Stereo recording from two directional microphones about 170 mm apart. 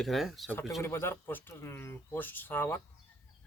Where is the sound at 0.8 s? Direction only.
15° left (ahead or behind).